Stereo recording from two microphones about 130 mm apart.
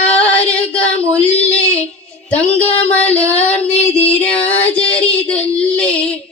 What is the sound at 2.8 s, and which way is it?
Child singing, 10° left (ahead or behind).